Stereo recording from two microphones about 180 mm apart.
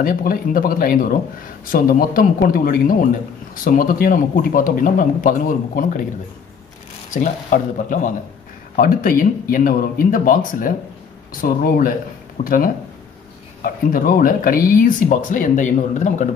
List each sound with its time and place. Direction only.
0.0 s a man's voice: 55° left (ahead or behind)
7.2 s a man's voice: 45° left (ahead or behind)